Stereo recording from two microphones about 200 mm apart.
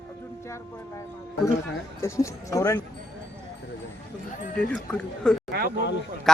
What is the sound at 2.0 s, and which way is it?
Speech, 15° left (ahead or behind).